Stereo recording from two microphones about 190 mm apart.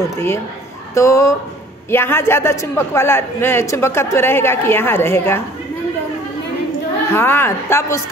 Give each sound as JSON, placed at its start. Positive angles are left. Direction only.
{"t": 0.9, "sound": "a man's voice", "side_deg": 15}
{"t": 7.1, "sound": "a man's voice", "side_deg": 15}